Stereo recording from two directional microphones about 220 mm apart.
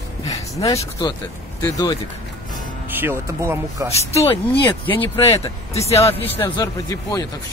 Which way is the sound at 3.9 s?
30° left (ahead or behind).